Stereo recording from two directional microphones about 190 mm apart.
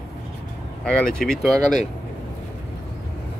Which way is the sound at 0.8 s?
5° left (ahead or behind).